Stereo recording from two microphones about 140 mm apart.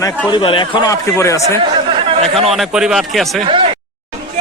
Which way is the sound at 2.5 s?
5° right (ahead or behind).